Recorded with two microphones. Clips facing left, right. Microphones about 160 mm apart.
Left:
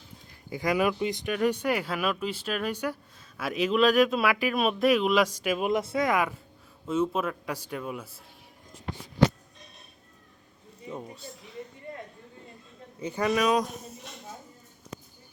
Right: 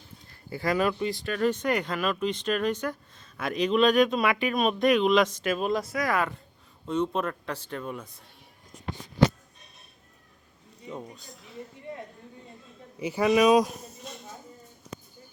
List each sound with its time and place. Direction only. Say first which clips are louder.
0.5 s speech: even; 15° left (ahead or behind)
5.8 s speech: left 2 dB; 25° left (ahead or behind)
6.8 s speech: even; 5° left (ahead or behind)
10.8 s speech: left 1 dB; 5° left (ahead or behind)
13.0 s a man's voice: right 4 dB; 10° right (ahead or behind)